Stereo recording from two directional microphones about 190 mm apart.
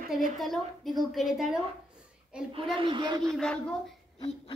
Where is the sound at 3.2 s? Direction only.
5° left (ahead or behind).